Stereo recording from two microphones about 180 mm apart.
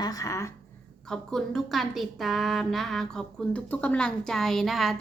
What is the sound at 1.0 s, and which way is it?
A woman's voice, 5° left (ahead or behind).